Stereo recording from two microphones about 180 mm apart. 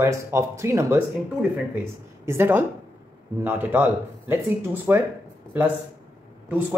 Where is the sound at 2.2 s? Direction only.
10° right (ahead or behind).